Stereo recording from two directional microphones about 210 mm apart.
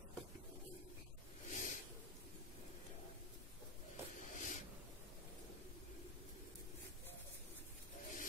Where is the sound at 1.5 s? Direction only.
35° left (ahead or behind).